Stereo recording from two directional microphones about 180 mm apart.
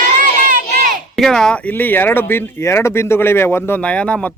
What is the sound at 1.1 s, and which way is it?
Speech, centre (ahead or behind).